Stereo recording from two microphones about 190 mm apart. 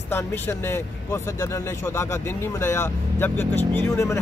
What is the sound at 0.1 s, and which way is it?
Speech, 10° left (ahead or behind).